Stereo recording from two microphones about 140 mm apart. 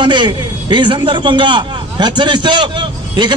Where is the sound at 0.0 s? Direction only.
35° right (ahead or behind).